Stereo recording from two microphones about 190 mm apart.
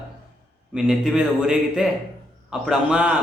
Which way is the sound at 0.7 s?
5° right (ahead or behind).